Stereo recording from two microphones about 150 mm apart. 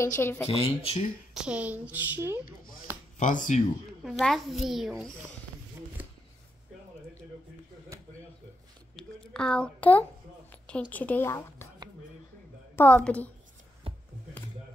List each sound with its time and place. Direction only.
0.0 s a woman's voice: 15° left (ahead or behind)
0.5 s speech: 40° left (ahead or behind)
1.3 s a woman's voice: 5° right (ahead or behind)
3.2 s speech: 60° left (ahead or behind)
4.0 s a child's voice: centre (ahead or behind)
8.9 s a woman's voice: 5° left (ahead or behind)
12.7 s a woman's voice: 10° left (ahead or behind)
13.9 s a sound: 35° right (ahead or behind)